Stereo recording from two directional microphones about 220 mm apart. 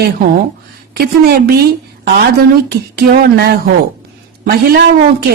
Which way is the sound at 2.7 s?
45° right (ahead or behind).